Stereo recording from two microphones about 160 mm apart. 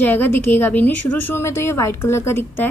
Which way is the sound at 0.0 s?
10° left (ahead or behind).